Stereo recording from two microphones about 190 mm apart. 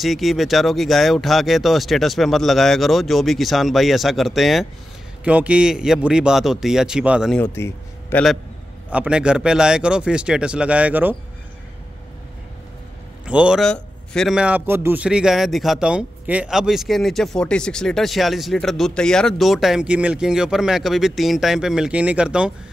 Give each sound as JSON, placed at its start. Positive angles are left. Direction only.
{"t": 0.0, "sound": "a man's voice", "side_deg": 0}
{"t": 7.3, "sound": "speech", "side_deg": 10}
{"t": 8.9, "sound": "a man's voice", "side_deg": -5}
{"t": 13.2, "sound": "a man's voice", "side_deg": -5}